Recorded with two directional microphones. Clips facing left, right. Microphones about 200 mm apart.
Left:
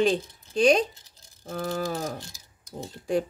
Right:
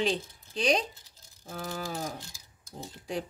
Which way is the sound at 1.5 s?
55° left (ahead or behind).